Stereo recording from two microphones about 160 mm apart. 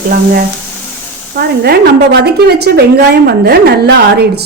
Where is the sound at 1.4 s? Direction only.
80° right.